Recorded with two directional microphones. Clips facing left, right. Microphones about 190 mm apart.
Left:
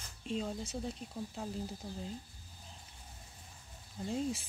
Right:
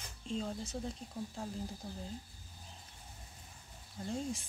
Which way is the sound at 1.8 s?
Centre (ahead or behind).